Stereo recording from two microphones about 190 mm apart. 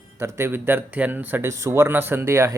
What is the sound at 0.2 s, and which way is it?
Speech, 10° right (ahead or behind).